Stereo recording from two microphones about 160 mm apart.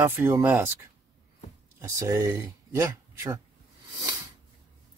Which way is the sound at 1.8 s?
20° right (ahead or behind).